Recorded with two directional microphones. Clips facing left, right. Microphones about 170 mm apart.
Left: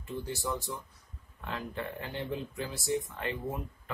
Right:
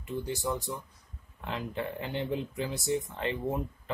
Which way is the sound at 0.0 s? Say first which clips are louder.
Right 3 dB; 15° right (ahead or behind).